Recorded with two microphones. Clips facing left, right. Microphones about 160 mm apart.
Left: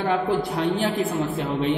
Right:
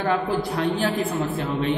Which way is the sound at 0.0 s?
20° left (ahead or behind).